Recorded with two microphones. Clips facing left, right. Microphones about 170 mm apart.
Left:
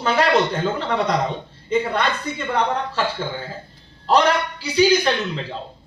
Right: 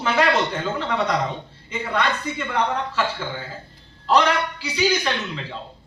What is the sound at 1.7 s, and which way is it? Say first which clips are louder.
A man's voice: left 4 dB; 35° left (ahead or behind).